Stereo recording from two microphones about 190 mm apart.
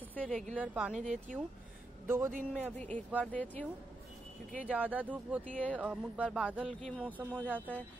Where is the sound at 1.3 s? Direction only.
40° right (ahead or behind).